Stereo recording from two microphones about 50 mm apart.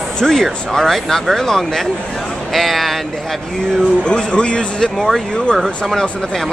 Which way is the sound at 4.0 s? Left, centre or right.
Centre.